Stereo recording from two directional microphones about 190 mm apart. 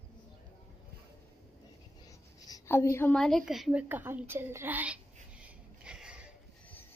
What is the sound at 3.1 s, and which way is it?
A woman's voice, centre (ahead or behind).